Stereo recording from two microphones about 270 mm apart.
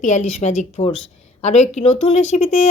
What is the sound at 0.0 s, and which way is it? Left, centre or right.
Speech, left.